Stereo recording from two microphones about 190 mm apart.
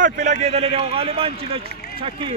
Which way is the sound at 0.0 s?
40° right (ahead or behind).